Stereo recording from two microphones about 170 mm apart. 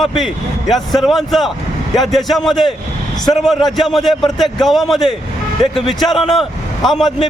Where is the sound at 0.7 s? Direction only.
Centre (ahead or behind).